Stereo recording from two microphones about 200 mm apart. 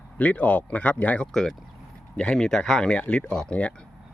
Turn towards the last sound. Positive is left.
turn(degrees=5)  # may be behind; listen again after turning